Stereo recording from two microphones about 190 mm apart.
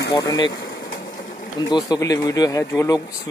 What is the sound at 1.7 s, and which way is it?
Speech, 20° left (ahead or behind).